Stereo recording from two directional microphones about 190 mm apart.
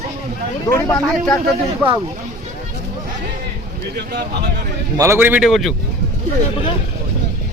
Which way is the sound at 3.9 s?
60° right (ahead or behind).